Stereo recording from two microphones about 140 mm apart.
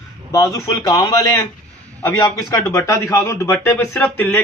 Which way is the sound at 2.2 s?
25° left (ahead or behind).